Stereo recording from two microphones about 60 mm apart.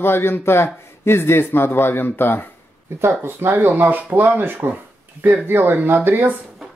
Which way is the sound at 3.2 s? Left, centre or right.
Right.